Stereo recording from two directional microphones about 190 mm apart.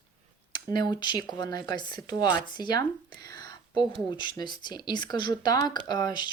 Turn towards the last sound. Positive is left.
turn(degrees=20)  # may be behind; listen again after turning